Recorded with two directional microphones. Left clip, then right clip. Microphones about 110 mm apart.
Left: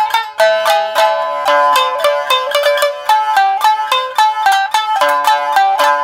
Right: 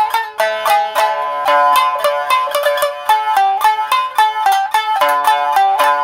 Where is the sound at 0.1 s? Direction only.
30° left (ahead or behind).